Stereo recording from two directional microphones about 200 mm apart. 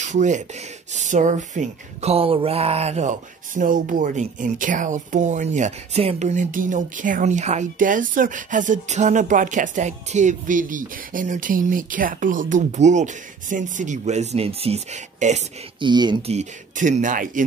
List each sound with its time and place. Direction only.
0.0 s speech: 35° right (ahead or behind)
15.8 s speech: 20° right (ahead or behind); by 17.5 s 40° right (ahead or behind)